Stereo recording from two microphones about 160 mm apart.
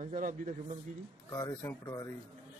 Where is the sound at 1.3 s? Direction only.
15° left (ahead or behind).